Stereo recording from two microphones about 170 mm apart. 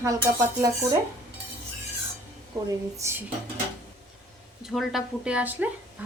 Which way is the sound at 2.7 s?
15° right (ahead or behind).